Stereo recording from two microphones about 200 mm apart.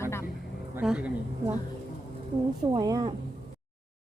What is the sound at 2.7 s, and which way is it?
Speech, 20° right (ahead or behind).